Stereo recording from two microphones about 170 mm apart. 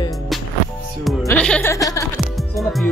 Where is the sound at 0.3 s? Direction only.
Centre (ahead or behind).